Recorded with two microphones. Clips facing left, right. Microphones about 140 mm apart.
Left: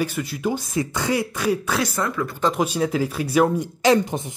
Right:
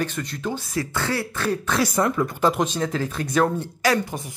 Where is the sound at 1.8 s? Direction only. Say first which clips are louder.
Right 3 dB; 15° right (ahead or behind).